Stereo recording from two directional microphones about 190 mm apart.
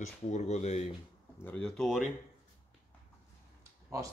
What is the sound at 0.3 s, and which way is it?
Speech, 35° left (ahead or behind).